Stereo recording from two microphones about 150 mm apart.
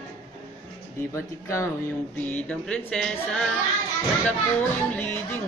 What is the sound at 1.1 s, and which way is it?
Speech, 20° left (ahead or behind).